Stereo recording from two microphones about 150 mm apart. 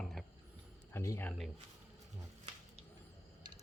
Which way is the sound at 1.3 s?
Centre (ahead or behind).